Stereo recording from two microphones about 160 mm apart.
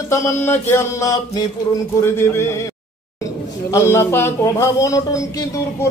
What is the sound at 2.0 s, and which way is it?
Speech, 15° left (ahead or behind).